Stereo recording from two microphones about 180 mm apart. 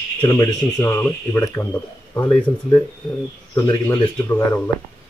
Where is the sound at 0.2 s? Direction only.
20° left (ahead or behind).